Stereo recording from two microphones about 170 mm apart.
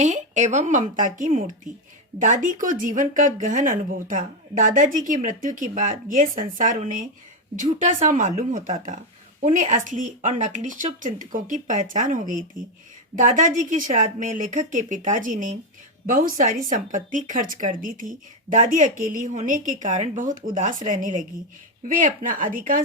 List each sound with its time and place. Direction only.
0.0 s speech: 45° right (ahead or behind)